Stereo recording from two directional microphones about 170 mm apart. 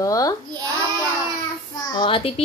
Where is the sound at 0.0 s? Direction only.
20° left (ahead or behind).